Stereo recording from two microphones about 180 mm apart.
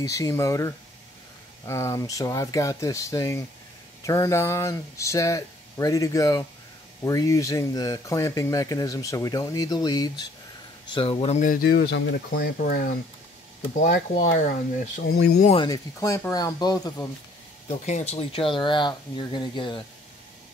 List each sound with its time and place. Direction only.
0.0 s speech: 20° left (ahead or behind); by 11.6 s 45° left (ahead or behind)
11.7 s speech: 65° left (ahead or behind)
13.9 s speech: 40° left (ahead or behind)
15.1 s speech: 65° left (ahead or behind)
15.5 s speech: 20° left (ahead or behind)
17.6 s speech: 40° left (ahead or behind)